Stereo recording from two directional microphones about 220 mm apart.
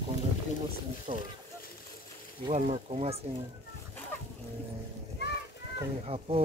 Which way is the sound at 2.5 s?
30° right (ahead or behind).